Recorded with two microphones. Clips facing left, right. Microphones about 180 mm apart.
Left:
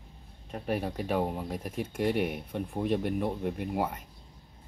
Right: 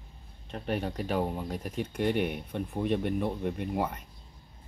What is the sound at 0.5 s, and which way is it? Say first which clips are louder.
Speech: even; 5° left (ahead or behind).